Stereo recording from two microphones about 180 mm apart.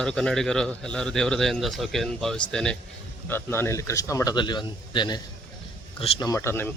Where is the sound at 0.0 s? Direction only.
5° left (ahead or behind); by 6.2 s 30° left (ahead or behind).